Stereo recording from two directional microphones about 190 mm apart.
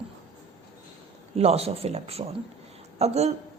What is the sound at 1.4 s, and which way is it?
Speech, 35° right (ahead or behind).